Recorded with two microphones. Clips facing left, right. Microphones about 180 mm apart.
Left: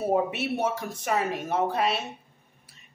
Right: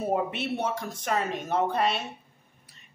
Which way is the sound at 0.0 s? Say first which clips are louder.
Left 3 dB; 5° left (ahead or behind).